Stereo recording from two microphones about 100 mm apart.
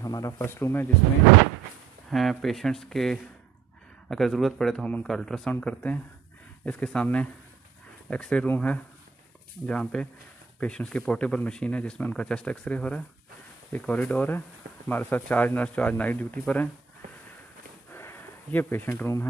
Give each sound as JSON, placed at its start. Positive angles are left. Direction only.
{"t": 0.0, "sound": "speech", "side_deg": 35}
{"t": 2.0, "sound": "speech", "side_deg": 0}
{"t": 17.9, "sound": "a sound", "side_deg": 25}